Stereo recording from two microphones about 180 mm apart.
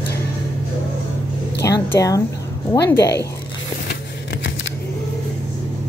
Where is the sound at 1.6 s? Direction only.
15° left (ahead or behind).